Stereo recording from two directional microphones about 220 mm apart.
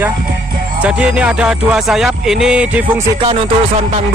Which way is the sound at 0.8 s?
5° right (ahead or behind).